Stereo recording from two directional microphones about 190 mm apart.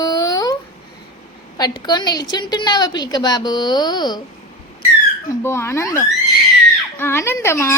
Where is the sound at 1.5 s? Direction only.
20° left (ahead or behind).